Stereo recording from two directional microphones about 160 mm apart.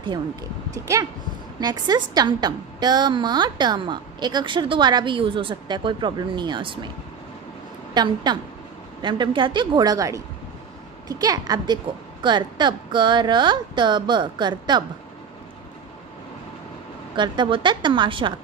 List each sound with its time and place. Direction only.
1.6 s a woman's voice: 25° right (ahead or behind)
7.9 s a woman's voice: 25° right (ahead or behind)
17.1 s a woman's voice: 30° right (ahead or behind)